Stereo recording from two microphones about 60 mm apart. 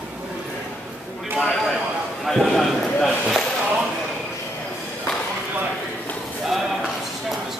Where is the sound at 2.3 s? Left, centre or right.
Centre.